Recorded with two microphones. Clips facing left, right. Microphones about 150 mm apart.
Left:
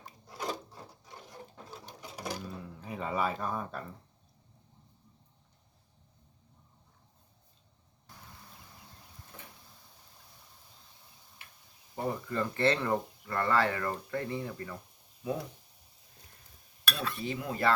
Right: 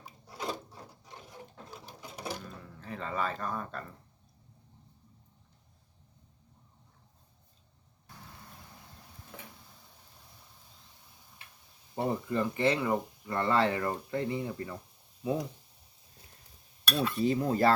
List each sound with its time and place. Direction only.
0.0 s a sound: 5° right (ahead or behind)
1.7 s sewing machine: 5° right (ahead or behind)
2.4 s speech: 10° left (ahead or behind)
11.9 s speech: 20° right (ahead or behind)
13.3 s speech: 20° right (ahead or behind)
17.2 s cutlery: 35° right (ahead or behind)